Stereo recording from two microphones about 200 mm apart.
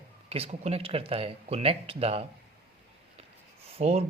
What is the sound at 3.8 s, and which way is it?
Speech, 30° right (ahead or behind).